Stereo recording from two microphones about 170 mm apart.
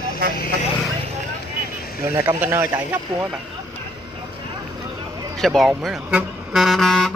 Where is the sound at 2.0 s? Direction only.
15° right (ahead or behind).